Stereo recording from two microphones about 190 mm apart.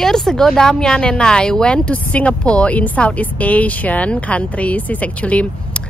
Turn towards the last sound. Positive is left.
turn(degrees=5)  # may be behind; listen again after turning